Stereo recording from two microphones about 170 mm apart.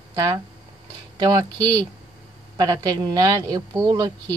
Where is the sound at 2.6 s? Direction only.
25° right (ahead or behind).